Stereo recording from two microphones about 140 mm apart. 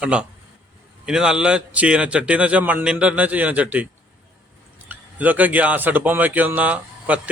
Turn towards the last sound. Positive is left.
turn(degrees=-10)  # may be behind; listen again after turning